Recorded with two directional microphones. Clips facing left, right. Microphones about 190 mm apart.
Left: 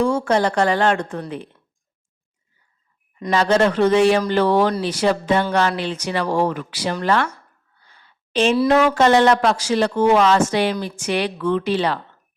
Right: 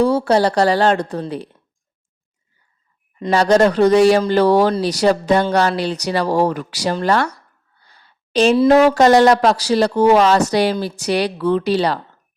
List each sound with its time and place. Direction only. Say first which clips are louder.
0.0 s speech: right 3 dB; 35° right (ahead or behind)
3.3 s speech: right 4 dB; 40° right (ahead or behind)
7.3 s a sound: left 1 dB; 40° right (ahead or behind)
8.7 s speech: right 4 dB; 40° right (ahead or behind)